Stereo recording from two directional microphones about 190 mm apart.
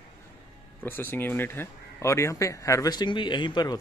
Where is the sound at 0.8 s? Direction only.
10° left (ahead or behind).